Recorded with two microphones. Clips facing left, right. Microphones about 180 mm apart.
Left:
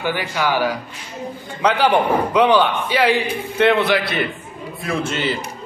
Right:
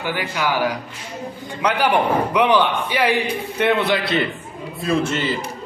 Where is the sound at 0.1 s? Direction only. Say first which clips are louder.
Right 1 dB; 15° right (ahead or behind).